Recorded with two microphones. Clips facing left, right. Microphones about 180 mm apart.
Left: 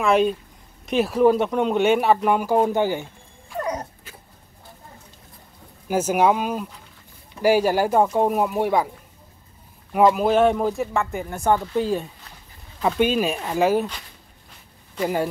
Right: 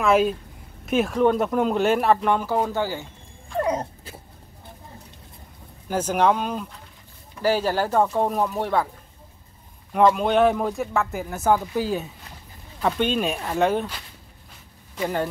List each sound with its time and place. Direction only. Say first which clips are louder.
0.0 s speech: even; centre (ahead or behind); by 3.1 s 20° left (ahead or behind)
3.5 s dog: right 3 dB; 30° right (ahead or behind)
5.9 s speech: left 2 dB; 10° left (ahead or behind)
9.9 s speech: left 1 dB; 5° left (ahead or behind)
15.0 s speech: left 2 dB; 10° left (ahead or behind)